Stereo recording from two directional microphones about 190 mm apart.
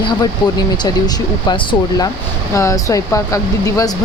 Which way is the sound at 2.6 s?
15° left (ahead or behind).